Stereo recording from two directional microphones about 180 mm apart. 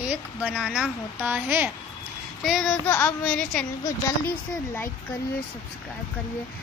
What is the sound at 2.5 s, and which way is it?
A child's voice, centre (ahead or behind).